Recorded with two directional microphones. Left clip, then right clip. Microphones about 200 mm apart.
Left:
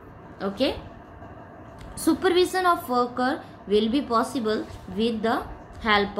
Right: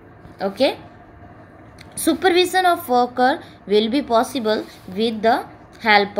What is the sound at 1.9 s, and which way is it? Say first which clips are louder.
A woman's voice: right 5 dB; 30° right (ahead or behind).